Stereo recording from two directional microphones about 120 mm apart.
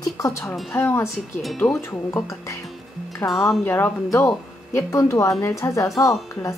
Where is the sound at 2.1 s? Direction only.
25° left (ahead or behind).